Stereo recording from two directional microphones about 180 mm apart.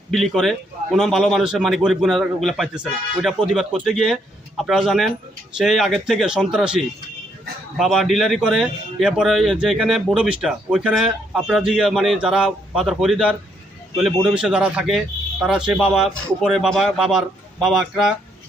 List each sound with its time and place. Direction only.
0.1 s speech: centre (ahead or behind)